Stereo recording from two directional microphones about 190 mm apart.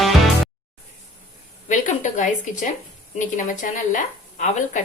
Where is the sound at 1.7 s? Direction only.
40° left (ahead or behind).